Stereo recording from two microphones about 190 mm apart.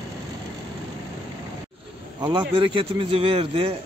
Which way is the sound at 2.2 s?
25° right (ahead or behind).